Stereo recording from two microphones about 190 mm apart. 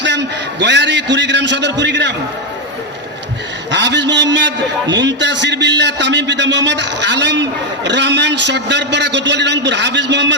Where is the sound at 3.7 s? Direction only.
65° right (ahead or behind).